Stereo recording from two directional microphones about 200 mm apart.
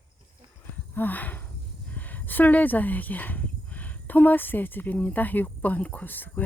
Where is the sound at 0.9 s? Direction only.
10° left (ahead or behind).